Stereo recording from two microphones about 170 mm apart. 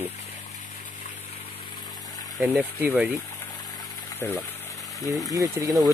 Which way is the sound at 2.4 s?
10° right (ahead or behind).